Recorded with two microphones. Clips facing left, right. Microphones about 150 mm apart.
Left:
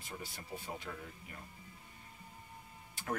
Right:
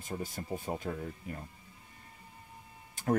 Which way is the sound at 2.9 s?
45° right (ahead or behind).